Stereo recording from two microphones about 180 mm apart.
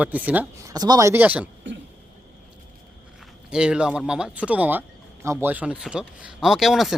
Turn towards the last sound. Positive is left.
turn(degrees=0)  # may be behind; listen again after turning